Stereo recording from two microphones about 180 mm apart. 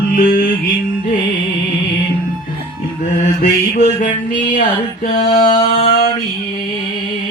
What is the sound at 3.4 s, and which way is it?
Music, 40° left (ahead or behind).